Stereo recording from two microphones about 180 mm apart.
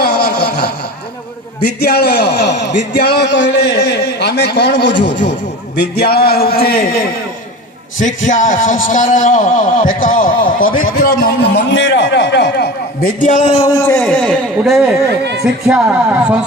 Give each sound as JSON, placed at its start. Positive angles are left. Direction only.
{"t": 0.0, "sound": "a sound", "side_deg": 60}
{"t": 1.6, "sound": "a man's voice", "side_deg": 65}
{"t": 5.7, "sound": "a man's voice", "side_deg": 65}
{"t": 8.3, "sound": "a man's voice", "side_deg": 45}
{"t": 13.4, "sound": "a man's voice", "side_deg": 30}
{"t": 13.9, "sound": "a man's voice", "side_deg": 5}
{"t": 15.2, "sound": "speech", "side_deg": -70}
{"t": 15.6, "sound": "speech", "side_deg": -5}